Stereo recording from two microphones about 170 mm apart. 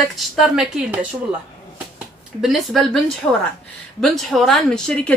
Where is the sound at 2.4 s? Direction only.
Centre (ahead or behind).